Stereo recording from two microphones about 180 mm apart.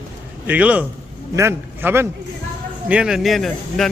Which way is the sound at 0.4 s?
10° right (ahead or behind).